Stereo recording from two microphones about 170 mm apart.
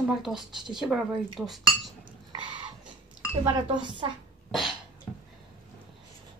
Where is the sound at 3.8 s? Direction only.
25° right (ahead or behind).